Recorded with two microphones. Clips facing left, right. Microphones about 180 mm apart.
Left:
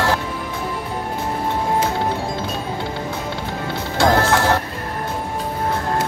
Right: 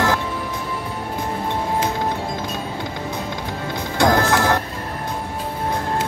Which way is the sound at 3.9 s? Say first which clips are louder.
Even; 15° right (ahead or behind).